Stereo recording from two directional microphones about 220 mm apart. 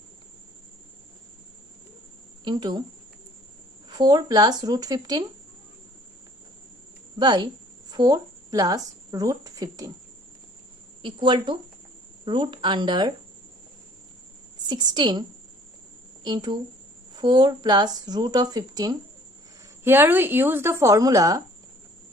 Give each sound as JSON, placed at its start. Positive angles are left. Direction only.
{"t": 2.4, "sound": "speech", "side_deg": -20}
{"t": 3.9, "sound": "a woman's voice", "side_deg": -20}
{"t": 7.2, "sound": "speech", "side_deg": -20}
{"t": 11.0, "sound": "speech", "side_deg": -20}
{"t": 14.7, "sound": "speech", "side_deg": -20}
{"t": 16.3, "sound": "a woman's voice", "side_deg": -20}